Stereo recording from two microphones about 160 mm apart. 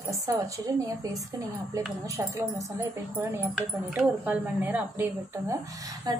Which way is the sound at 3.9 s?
10° right (ahead or behind).